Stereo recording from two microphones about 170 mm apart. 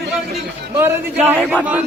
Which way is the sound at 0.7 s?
10° right (ahead or behind).